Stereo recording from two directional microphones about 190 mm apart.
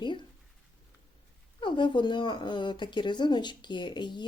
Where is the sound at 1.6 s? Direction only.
25° left (ahead or behind).